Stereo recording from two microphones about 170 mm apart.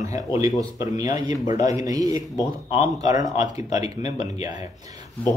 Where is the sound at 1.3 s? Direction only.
45° left (ahead or behind).